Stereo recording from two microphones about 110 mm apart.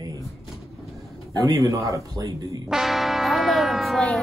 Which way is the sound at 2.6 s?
5° right (ahead or behind).